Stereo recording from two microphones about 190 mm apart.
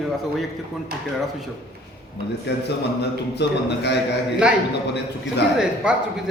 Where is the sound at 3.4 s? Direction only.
60° left (ahead or behind).